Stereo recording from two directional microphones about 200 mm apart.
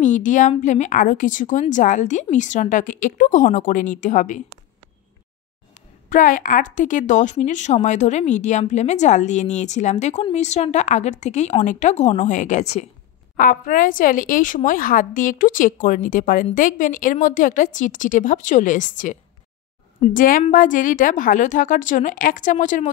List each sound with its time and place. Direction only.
0.0 s a woman's voice: 40° left (ahead or behind)
5.8 s a woman's voice: 40° left (ahead or behind)
20.2 s a woman's voice: 45° left (ahead or behind)